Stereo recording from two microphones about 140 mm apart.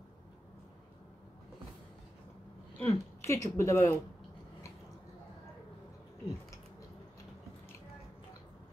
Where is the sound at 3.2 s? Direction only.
20° left (ahead or behind).